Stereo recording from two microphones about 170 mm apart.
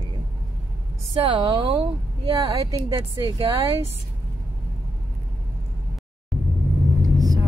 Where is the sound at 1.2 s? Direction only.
30° right (ahead or behind).